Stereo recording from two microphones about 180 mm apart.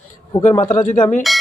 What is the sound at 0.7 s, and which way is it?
Speech, 45° left (ahead or behind).